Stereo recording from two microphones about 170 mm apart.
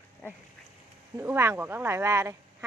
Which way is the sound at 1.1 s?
15° right (ahead or behind).